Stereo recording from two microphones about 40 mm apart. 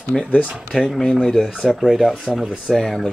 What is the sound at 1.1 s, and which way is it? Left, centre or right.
Speech, centre.